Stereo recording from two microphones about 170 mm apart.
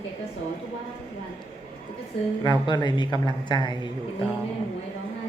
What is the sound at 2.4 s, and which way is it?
Speech, 25° left (ahead or behind).